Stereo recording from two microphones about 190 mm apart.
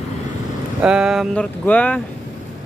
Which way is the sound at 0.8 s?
5° right (ahead or behind).